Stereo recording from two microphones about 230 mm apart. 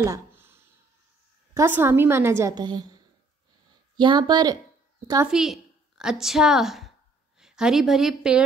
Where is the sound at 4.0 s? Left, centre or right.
Centre.